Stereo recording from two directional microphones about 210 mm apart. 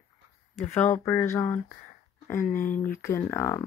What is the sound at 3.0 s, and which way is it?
Speech, 10° left (ahead or behind).